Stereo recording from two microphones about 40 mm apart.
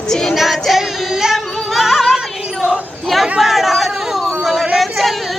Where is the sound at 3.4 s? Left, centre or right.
Centre.